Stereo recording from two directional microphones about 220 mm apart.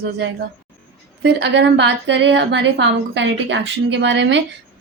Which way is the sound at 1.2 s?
50° right (ahead or behind).